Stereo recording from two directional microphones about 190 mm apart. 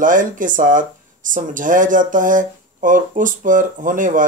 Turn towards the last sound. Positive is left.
turn(degrees=-45)  # may be behind; listen again after turning